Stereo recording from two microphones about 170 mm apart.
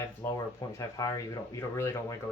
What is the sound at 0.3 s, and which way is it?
Speech, 20° left (ahead or behind).